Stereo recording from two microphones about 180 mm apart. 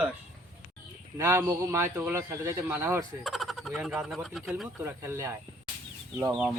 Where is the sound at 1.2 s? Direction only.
15° right (ahead or behind).